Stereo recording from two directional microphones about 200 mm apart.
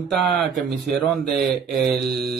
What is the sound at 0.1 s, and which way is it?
Speech, centre (ahead or behind).